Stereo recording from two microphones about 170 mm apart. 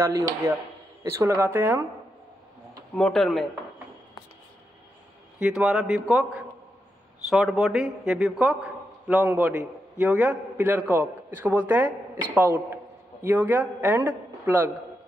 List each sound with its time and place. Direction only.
0.0 s a man's voice: 15° right (ahead or behind)
3.0 s speech: 5° left (ahead or behind)
5.4 s a man's voice: 5° right (ahead or behind)